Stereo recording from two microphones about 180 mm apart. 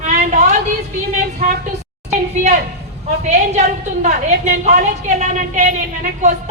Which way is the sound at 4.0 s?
40° right (ahead or behind).